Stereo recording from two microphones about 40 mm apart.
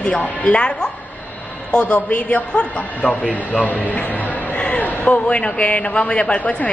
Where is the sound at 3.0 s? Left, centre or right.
Right.